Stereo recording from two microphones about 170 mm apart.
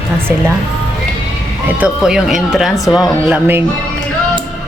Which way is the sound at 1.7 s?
5° right (ahead or behind).